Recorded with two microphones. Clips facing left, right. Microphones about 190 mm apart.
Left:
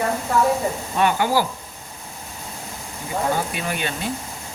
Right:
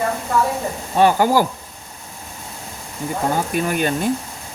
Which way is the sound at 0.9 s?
35° right (ahead or behind).